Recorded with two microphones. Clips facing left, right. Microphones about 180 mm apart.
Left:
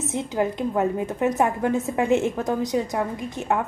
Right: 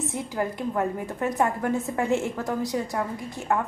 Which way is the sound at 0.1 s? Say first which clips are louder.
Left 4 dB; 20° left (ahead or behind).